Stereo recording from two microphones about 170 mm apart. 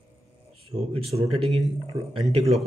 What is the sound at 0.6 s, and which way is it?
A man's voice, 35° right (ahead or behind).